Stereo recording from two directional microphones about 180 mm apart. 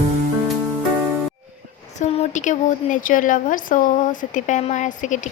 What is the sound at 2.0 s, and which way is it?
A woman's voice, 40° left (ahead or behind).